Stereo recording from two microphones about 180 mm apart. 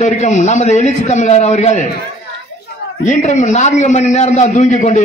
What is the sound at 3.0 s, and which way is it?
A man's voice, 40° left (ahead or behind).